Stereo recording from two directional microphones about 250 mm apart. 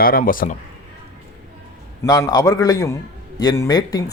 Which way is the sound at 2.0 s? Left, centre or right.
Centre.